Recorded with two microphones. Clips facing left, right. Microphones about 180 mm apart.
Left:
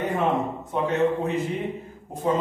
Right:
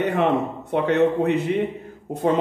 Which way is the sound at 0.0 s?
70° right (ahead or behind).